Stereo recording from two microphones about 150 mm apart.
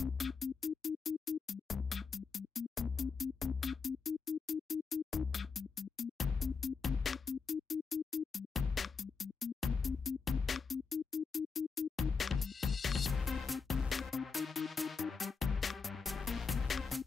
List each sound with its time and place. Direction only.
0.0 s music: centre (ahead or behind)